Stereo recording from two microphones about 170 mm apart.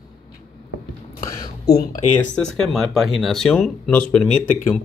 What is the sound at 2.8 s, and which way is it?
Speech, centre (ahead or behind).